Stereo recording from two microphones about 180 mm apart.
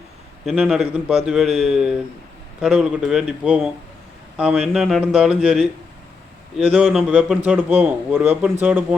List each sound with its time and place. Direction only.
0.4 s a man's voice: 5° right (ahead or behind)